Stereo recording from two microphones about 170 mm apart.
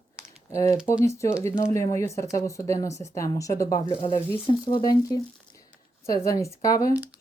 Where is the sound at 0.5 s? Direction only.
15° left (ahead or behind).